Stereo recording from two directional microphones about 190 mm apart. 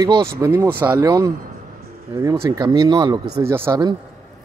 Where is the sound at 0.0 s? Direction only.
25° right (ahead or behind).